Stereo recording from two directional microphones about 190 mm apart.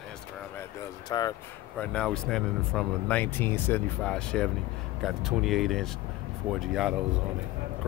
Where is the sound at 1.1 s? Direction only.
20° left (ahead or behind).